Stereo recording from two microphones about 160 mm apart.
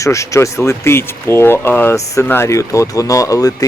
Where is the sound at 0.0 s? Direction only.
20° left (ahead or behind).